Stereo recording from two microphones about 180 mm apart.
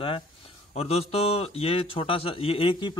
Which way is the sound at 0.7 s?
35° left (ahead or behind).